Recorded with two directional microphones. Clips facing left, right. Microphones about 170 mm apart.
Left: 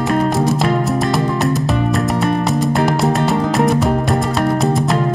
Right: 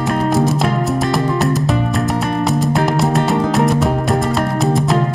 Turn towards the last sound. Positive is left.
turn(degrees=0)  # may be behind; listen again after turning